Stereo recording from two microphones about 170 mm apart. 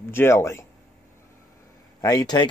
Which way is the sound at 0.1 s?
15° left (ahead or behind).